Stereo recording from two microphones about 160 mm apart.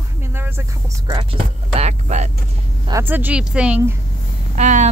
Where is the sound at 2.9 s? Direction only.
10° right (ahead or behind).